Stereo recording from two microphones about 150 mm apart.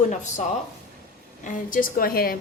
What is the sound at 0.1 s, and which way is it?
Speech, 55° left (ahead or behind).